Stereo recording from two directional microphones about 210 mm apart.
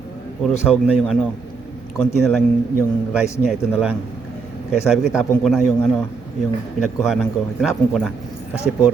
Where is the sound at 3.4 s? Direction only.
5° right (ahead or behind).